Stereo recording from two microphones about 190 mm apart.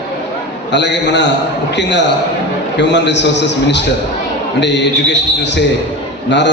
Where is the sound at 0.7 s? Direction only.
70° left (ahead or behind).